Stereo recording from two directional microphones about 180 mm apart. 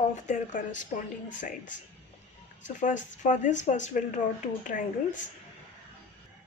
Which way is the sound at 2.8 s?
45° left (ahead or behind).